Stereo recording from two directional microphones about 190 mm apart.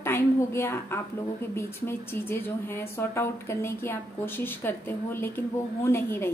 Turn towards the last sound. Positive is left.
turn(degrees=10)  # may be behind; listen again after turning